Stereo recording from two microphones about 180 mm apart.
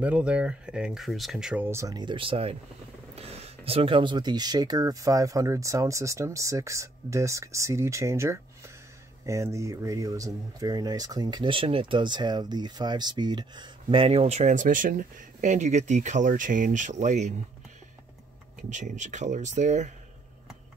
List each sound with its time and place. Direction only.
0.0 s speech: 5° right (ahead or behind); by 17.3 s 40° right (ahead or behind)
18.6 s speech: 45° right (ahead or behind)